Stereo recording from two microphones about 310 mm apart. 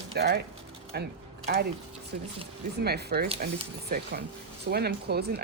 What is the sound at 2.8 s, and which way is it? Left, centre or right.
Speech, right.